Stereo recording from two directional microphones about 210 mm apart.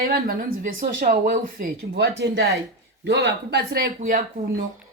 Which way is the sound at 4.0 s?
40° right (ahead or behind).